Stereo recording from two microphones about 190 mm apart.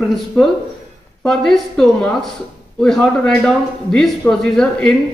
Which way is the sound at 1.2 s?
Centre (ahead or behind).